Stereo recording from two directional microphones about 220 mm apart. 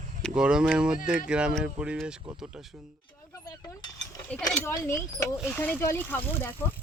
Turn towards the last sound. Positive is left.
turn(degrees=10)  # may be behind; listen again after turning